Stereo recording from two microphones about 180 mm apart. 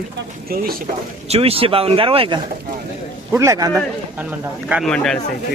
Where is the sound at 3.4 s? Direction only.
20° right (ahead or behind).